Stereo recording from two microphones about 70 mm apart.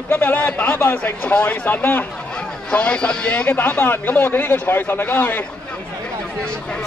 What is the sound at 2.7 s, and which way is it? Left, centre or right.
Speech, centre.